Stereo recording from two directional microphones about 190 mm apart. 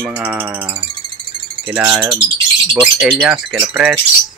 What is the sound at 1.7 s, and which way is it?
Rattle, 10° right (ahead or behind).